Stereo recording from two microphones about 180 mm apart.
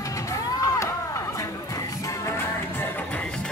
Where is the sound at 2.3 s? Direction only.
10° left (ahead or behind).